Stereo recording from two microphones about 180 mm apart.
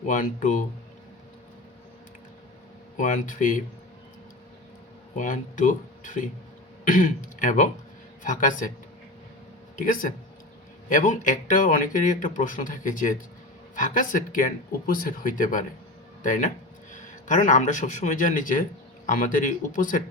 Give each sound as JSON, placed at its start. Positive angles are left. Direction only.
{"t": 0.0, "sound": "speech", "side_deg": 45}
{"t": 3.0, "sound": "speech", "side_deg": 45}
{"t": 5.1, "sound": "speech", "side_deg": 45}
{"t": 9.7, "sound": "speech", "side_deg": 50}